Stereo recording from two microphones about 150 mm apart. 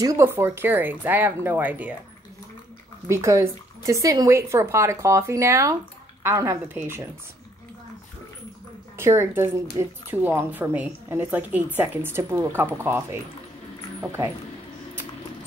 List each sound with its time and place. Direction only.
0.0 s a woman's voice: 20° right (ahead or behind)
3.1 s a woman's voice: 20° right (ahead or behind)
8.9 s a woman's voice: 15° right (ahead or behind)